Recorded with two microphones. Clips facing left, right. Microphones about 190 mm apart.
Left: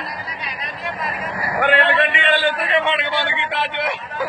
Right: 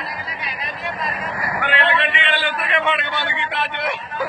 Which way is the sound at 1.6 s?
45° left (ahead or behind).